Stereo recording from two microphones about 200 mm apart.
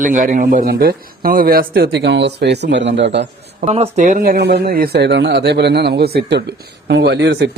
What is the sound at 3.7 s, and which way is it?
A man's voice, 35° right (ahead or behind).